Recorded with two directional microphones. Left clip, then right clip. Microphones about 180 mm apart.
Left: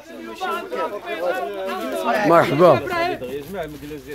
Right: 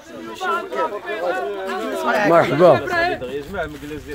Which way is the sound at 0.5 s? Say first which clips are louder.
Right 4 dB; 50° left (ahead or behind).